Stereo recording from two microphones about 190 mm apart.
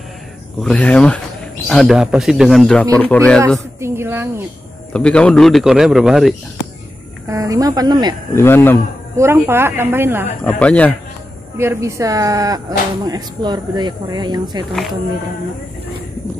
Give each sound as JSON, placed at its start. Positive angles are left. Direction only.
{"t": 0.6, "sound": "a man's voice", "side_deg": 5}
{"t": 3.4, "sound": "a woman's voice", "side_deg": -15}
{"t": 4.9, "sound": "a man's voice", "side_deg": 5}
{"t": 7.2, "sound": "speech", "side_deg": -20}
{"t": 8.4, "sound": "speech", "side_deg": 10}
{"t": 9.1, "sound": "a woman's voice", "side_deg": -15}
{"t": 10.4, "sound": "speech", "side_deg": 5}
{"t": 11.5, "sound": "speech", "side_deg": -15}
{"t": 14.7, "sound": "a man's voice", "side_deg": 0}